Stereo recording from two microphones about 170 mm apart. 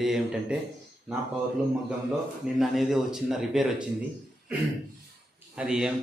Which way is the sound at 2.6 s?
Centre (ahead or behind).